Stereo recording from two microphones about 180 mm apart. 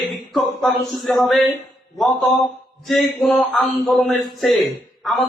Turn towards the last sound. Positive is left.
turn(degrees=0)  # may be behind; listen again after turning